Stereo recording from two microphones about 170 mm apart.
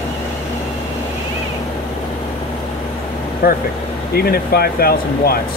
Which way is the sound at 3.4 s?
65° left (ahead or behind).